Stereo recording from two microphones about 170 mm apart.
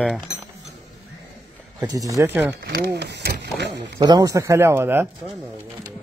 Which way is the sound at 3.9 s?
25° right (ahead or behind).